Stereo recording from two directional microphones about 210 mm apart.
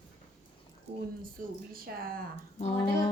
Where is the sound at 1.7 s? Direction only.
45° right (ahead or behind).